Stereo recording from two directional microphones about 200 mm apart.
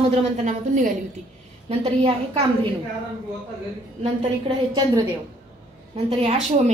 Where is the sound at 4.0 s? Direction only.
30° right (ahead or behind).